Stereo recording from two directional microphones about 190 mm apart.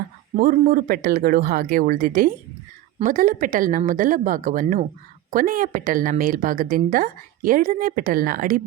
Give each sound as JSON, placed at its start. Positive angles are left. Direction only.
{"t": 0.3, "sound": "a woman's voice", "side_deg": -45}